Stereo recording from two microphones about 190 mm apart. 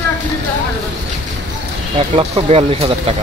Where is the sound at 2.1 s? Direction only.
30° right (ahead or behind).